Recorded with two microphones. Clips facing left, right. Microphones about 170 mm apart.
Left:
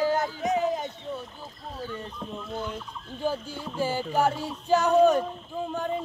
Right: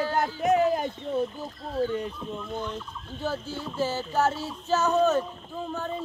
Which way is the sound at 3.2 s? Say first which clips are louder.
Left 1 dB; 15° left (ahead or behind).